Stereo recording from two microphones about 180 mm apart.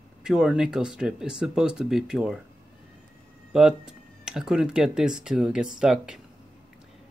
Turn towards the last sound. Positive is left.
turn(degrees=-5)  # may be behind; listen again after turning